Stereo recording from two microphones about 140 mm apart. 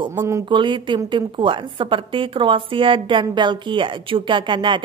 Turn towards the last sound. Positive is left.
turn(degrees=-35)  # may be behind; listen again after turning